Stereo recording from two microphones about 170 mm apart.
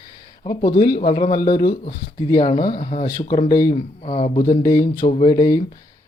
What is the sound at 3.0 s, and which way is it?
Speech, 25° left (ahead or behind).